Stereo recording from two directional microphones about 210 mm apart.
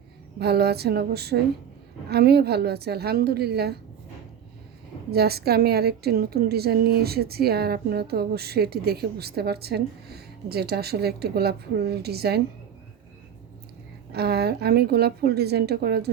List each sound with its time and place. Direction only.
0.3 s a woman's voice: 50° right (ahead or behind)
5.1 s a woman's voice: 50° right (ahead or behind)
14.1 s a woman's voice: 50° right (ahead or behind)